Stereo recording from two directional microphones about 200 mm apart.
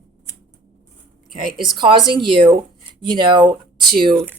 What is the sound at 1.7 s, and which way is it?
A woman's voice, 25° right (ahead or behind).